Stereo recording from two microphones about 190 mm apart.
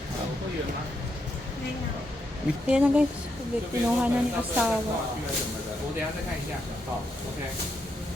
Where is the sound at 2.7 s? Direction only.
5° right (ahead or behind).